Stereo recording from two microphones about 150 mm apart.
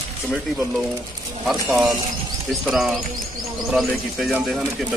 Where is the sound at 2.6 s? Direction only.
Centre (ahead or behind).